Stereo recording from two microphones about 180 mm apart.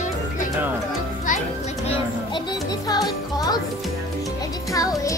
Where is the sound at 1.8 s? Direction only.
25° left (ahead or behind).